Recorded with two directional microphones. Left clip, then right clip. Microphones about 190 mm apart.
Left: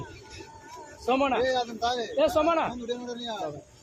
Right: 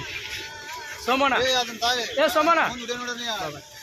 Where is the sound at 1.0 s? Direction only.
5° right (ahead or behind).